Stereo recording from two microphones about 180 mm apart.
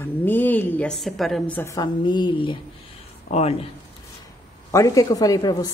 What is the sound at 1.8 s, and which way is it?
Speech, 25° left (ahead or behind).